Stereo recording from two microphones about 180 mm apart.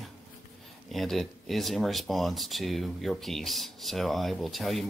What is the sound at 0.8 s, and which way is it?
Speech, centre (ahead or behind).